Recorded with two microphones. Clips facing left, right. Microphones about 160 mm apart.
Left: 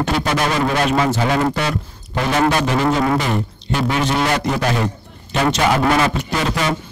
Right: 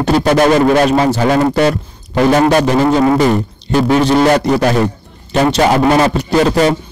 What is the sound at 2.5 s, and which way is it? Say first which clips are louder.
A man's voice: right 6 dB; 40° right (ahead or behind).